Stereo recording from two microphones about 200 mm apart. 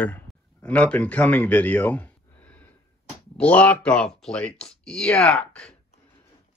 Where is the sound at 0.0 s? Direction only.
10° left (ahead or behind).